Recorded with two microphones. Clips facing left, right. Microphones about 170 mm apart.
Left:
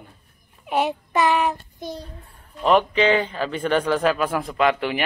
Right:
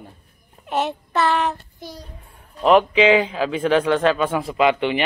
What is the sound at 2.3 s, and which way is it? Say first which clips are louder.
A man's voice: right 3 dB; 5° right (ahead or behind).